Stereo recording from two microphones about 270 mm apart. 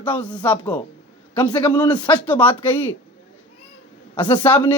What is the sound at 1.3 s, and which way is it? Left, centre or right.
Speech, centre.